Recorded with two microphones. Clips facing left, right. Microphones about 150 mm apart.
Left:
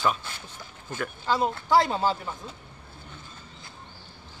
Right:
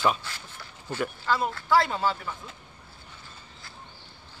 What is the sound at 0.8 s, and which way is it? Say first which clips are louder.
Speech: right 3 dB; 10° right (ahead or behind).